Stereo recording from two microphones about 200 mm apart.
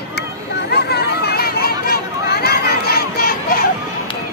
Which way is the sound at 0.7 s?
55° left (ahead or behind).